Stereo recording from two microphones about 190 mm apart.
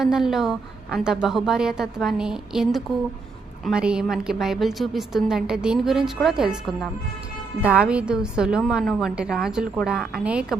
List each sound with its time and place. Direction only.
0.0 s a woman's voice: centre (ahead or behind)